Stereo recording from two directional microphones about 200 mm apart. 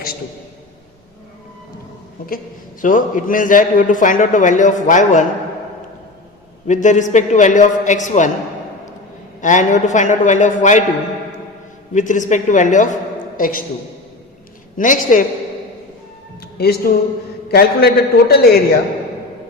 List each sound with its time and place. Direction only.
2.8 s a man's voice: 40° left (ahead or behind)
6.7 s a man's voice: 40° left (ahead or behind)
9.4 s a man's voice: 40° left (ahead or behind)
11.9 s a man's voice: 40° left (ahead or behind)
14.8 s a man's voice: 40° left (ahead or behind)
16.4 s music: 50° left (ahead or behind)
17.5 s a man's voice: 50° left (ahead or behind)